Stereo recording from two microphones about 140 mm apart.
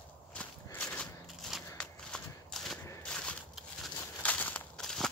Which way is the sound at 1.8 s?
5° left (ahead or behind).